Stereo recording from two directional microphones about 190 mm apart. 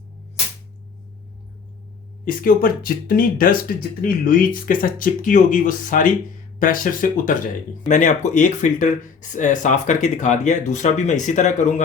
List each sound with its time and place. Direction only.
2.2 s speech: 50° left (ahead or behind)